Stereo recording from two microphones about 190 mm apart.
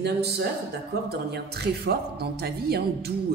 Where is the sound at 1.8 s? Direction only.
60° right (ahead or behind).